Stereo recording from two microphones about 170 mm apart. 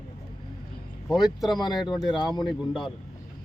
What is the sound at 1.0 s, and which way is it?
Speech, centre (ahead or behind).